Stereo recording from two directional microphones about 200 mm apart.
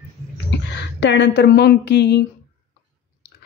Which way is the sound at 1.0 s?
60° left (ahead or behind).